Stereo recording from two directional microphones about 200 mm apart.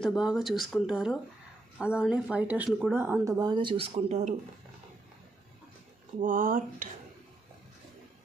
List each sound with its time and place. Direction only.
0.0 s speech: centre (ahead or behind); by 4.4 s 35° right (ahead or behind)
6.2 s speech: 45° right (ahead or behind)